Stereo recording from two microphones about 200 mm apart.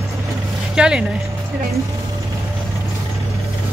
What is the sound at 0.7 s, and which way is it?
Speech, 5° right (ahead or behind).